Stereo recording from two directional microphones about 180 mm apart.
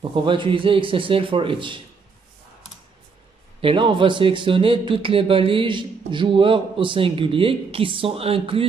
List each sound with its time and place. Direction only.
0.1 s speech: 25° right (ahead or behind)
3.6 s speech: 30° right (ahead or behind)